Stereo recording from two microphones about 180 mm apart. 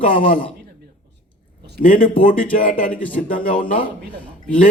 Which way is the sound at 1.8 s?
45° left (ahead or behind).